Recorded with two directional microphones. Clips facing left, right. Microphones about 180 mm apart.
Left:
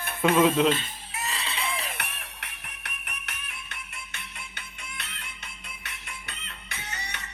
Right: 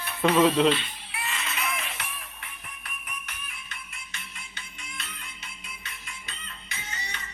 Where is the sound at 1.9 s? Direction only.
70° left (ahead or behind).